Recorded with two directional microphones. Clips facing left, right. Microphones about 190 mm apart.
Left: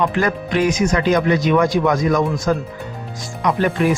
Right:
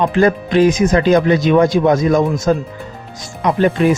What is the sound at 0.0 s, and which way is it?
Speech, 25° right (ahead or behind).